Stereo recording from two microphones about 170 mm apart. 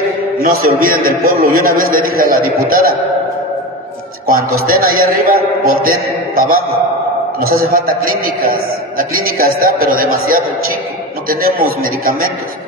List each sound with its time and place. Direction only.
0.4 s a man's voice: 55° right (ahead or behind)
4.3 s a man's voice: 55° right (ahead or behind)
7.3 s a man's voice: 60° right (ahead or behind)